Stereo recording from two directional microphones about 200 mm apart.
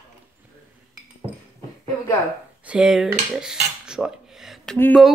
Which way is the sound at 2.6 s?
5° right (ahead or behind).